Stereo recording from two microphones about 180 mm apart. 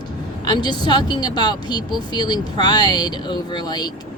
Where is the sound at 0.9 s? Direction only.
25° left (ahead or behind).